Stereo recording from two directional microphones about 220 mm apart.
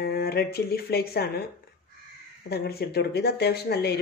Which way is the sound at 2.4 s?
45° left (ahead or behind).